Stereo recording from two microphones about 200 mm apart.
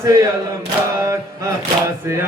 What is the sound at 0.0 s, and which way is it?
Chant, 15° right (ahead or behind).